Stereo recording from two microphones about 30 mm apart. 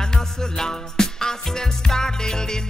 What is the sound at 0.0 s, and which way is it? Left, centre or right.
Music, left.